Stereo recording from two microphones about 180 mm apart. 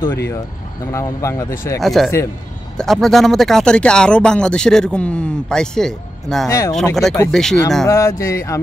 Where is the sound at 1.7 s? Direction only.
Centre (ahead or behind).